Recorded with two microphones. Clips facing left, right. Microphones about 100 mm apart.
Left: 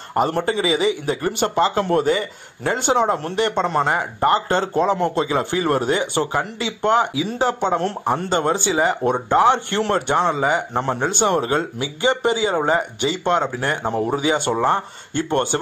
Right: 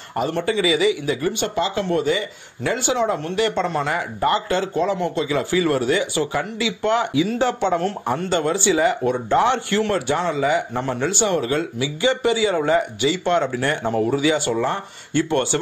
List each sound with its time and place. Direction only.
0.1 s a man's voice: 40° left (ahead or behind)
6.6 s a man's voice: 40° left (ahead or behind)
7.2 s speech: 20° left (ahead or behind)
7.4 s a man's voice: 30° left (ahead or behind)
12.1 s a man's voice: 45° left (ahead or behind)
12.4 s a man's voice: 30° left (ahead or behind)
13.2 s speech: 20° left (ahead or behind)